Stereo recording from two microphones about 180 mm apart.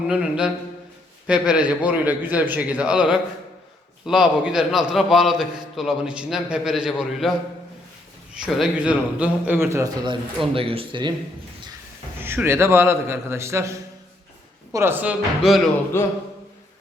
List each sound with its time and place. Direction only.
0.1 s a man's voice: 5° right (ahead or behind)
10.5 s speech: 30° right (ahead or behind)
12.2 s a man's voice: 10° right (ahead or behind)
15.9 s a sound: 15° left (ahead or behind)